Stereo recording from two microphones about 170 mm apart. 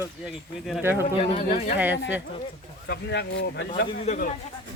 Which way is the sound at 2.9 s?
85° left.